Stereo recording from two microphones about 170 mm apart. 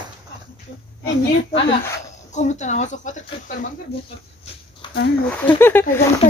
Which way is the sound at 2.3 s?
45° left (ahead or behind).